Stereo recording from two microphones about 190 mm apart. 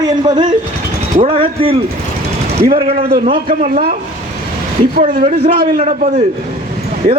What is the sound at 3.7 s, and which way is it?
Speech, 50° right (ahead or behind).